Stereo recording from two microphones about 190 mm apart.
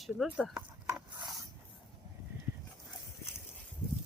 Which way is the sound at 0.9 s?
15° right (ahead or behind).